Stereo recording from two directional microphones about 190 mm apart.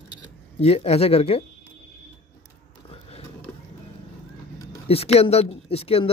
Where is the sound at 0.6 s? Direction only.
35° left (ahead or behind).